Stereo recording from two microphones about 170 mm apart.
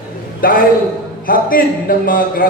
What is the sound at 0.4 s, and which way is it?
A man's voice, 55° left (ahead or behind).